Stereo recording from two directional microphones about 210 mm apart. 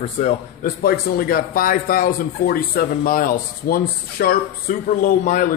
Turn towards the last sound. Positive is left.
turn(degrees=40)  # may be behind; listen again after turning